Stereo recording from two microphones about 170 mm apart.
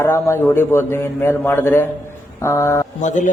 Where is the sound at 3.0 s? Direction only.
45° left (ahead or behind).